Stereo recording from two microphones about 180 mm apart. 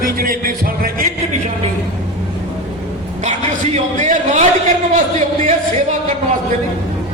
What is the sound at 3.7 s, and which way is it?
Speech, 45° right (ahead or behind).